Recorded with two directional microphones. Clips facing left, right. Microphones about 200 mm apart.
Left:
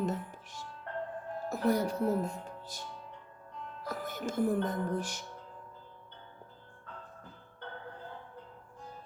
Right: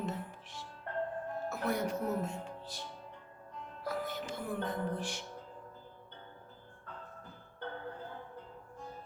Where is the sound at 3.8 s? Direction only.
45° left (ahead or behind).